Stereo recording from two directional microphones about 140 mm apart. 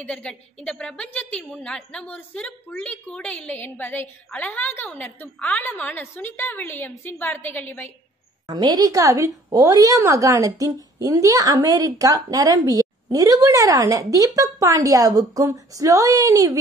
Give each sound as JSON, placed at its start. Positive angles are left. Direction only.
{"t": 0.0, "sound": "a woman's voice", "side_deg": 5}
{"t": 8.5, "sound": "a woman's voice", "side_deg": -30}